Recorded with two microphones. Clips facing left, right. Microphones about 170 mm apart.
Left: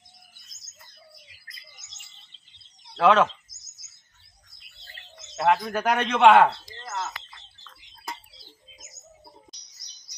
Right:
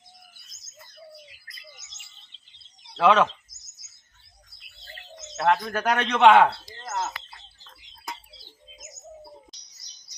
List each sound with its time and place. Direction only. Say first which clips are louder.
2.9 s speech: even; centre (ahead or behind)
5.4 s speech: left 1 dB; 5° left (ahead or behind)
7.0 s bird: right 3 dB; 35° right (ahead or behind)